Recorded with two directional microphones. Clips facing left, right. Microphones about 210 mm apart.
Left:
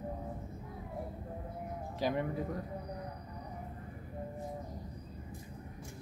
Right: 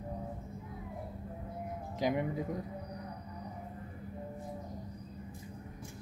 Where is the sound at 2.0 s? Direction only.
15° right (ahead or behind).